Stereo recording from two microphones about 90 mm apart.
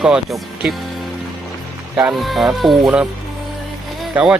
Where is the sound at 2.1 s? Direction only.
Centre (ahead or behind).